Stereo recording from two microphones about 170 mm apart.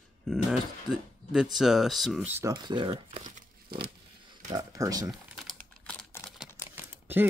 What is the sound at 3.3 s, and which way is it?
Crumpling, 65° right (ahead or behind).